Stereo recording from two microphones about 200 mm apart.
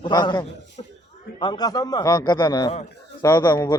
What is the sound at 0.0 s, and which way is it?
A man's voice, 20° left (ahead or behind).